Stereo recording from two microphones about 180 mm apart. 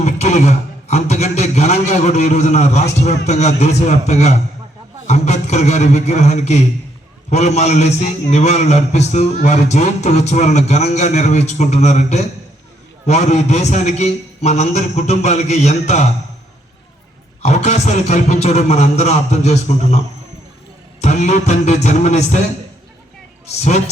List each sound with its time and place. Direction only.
0.0 s a man's voice: 40° left (ahead or behind)
17.4 s a man's voice: 40° left (ahead or behind)
21.0 s a man's voice: 40° left (ahead or behind)
23.6 s a man's voice: 40° left (ahead or behind)